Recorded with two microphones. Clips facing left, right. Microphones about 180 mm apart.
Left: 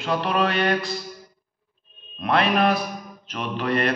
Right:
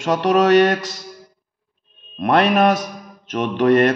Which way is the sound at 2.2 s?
45° right (ahead or behind).